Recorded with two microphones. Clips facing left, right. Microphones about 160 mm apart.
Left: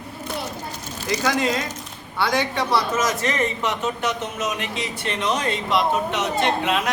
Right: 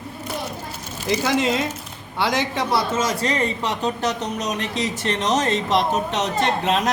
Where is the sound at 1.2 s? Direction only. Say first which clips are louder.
Right 1 dB; 25° right (ahead or behind).